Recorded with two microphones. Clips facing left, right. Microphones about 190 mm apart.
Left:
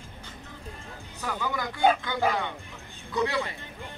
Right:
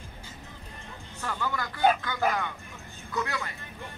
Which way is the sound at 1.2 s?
10° left (ahead or behind).